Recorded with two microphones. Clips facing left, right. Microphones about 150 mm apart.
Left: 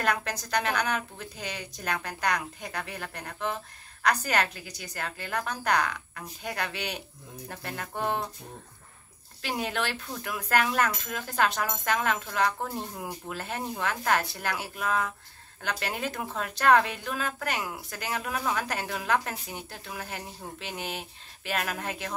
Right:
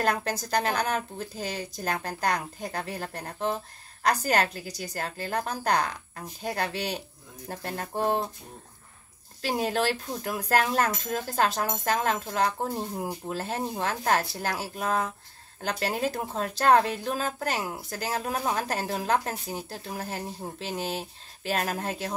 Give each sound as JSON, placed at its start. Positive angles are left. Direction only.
{"t": 0.0, "sound": "speech", "side_deg": -35}
{"t": 9.4, "sound": "speech", "side_deg": -40}